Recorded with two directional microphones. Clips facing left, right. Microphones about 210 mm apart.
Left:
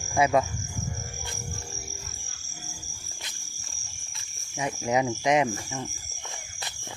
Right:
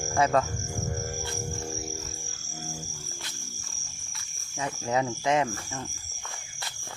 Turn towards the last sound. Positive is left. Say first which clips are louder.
# left 2 dB
turn(degrees=15)  # may be behind; listen again after turning